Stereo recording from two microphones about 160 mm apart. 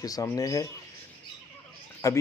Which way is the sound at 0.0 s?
20° left (ahead or behind).